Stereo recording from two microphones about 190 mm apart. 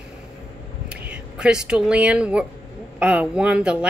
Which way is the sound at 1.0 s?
5° right (ahead or behind).